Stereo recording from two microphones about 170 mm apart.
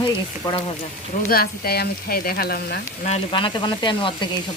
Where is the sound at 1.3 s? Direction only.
60° left (ahead or behind).